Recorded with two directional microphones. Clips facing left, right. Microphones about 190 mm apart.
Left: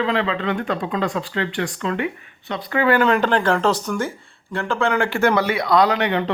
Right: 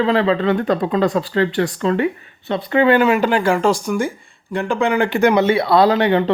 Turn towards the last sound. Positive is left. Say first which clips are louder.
# right 5 dB
turn(degrees=-30)  # may be behind; listen again after turning